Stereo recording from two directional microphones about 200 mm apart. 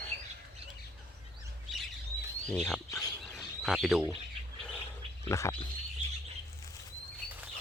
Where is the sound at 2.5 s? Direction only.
Centre (ahead or behind).